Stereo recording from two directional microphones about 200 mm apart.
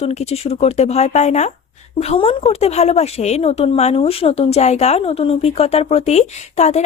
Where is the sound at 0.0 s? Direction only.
30° left (ahead or behind).